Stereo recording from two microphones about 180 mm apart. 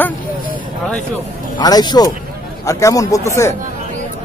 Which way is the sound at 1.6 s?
20° left (ahead or behind).